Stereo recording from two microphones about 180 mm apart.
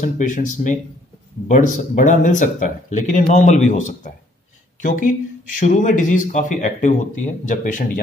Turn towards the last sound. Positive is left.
turn(degrees=45)  # may be behind; listen again after turning